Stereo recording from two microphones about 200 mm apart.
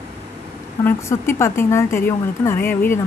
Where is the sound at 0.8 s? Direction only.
10° left (ahead or behind).